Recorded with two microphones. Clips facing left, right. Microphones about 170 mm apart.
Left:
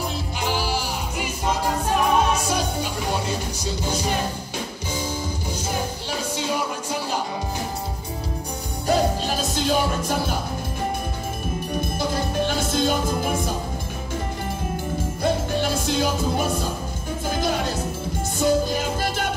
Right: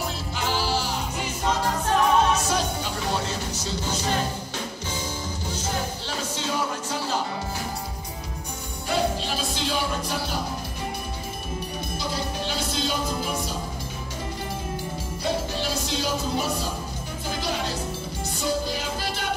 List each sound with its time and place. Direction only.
0.4 s music: 15° left (ahead or behind)
6.3 s music: 15° left (ahead or behind)
8.8 s music: 45° left (ahead or behind)
12.0 s music: 50° left (ahead or behind)
15.2 s music: 50° left (ahead or behind)
18.4 s music: 50° left (ahead or behind)